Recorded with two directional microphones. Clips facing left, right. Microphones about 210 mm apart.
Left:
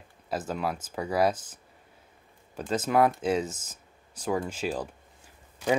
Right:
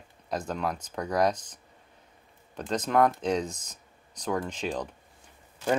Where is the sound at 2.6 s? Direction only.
5° left (ahead or behind).